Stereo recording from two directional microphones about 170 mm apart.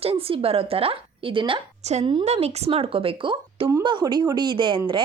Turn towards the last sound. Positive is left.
turn(degrees=-25)  # may be behind; listen again after turning